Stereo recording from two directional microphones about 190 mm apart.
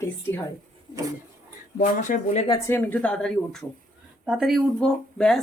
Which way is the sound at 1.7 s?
40° left (ahead or behind).